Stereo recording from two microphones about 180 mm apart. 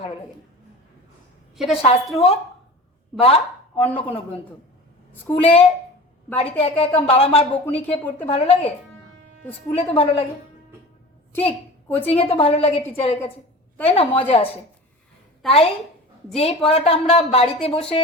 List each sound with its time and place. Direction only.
1.5 s a woman's voice: centre (ahead or behind)
2.1 s a woman's voice: 35° left (ahead or behind)
5.4 s a woman's voice: 30° left (ahead or behind)
9.7 s a woman's voice: 30° left (ahead or behind)
11.9 s a woman's voice: 10° left (ahead or behind)
12.1 s a woman's voice: 35° left (ahead or behind)
17.7 s speech: 5° left (ahead or behind)